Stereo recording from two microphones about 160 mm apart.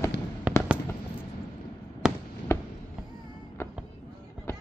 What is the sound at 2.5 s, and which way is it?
Fireworks, 20° left (ahead or behind).